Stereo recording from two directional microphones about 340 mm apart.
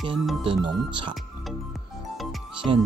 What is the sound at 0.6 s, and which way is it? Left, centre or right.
Speech, centre.